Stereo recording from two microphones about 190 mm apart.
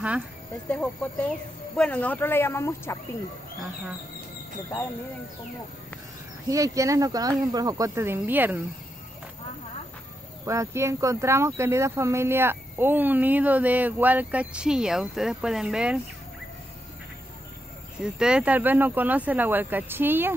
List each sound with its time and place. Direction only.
0.7 s speech: 5° left (ahead or behind)
6.5 s speech: 15° right (ahead or behind)
10.4 s speech: 15° right (ahead or behind)
18.0 s speech: 5° right (ahead or behind)